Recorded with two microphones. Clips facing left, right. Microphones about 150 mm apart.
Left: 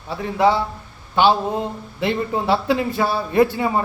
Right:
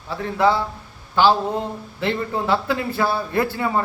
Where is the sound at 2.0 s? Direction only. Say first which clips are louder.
Left 2 dB; 15° left (ahead or behind).